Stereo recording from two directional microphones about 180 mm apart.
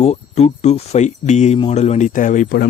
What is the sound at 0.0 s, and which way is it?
Speech, 35° left (ahead or behind).